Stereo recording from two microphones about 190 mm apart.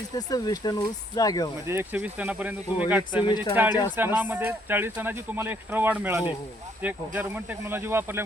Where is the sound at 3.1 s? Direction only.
25° left (ahead or behind).